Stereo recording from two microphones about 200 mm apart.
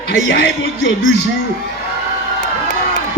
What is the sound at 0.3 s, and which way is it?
Speech, 55° left (ahead or behind).